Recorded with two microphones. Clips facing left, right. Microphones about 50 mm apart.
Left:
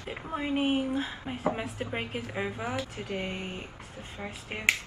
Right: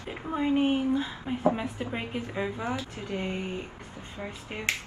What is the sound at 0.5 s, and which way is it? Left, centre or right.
Speech, centre.